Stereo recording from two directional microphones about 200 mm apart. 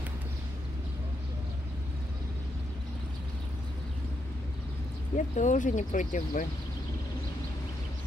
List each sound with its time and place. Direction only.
5.1 s speech: 40° left (ahead or behind)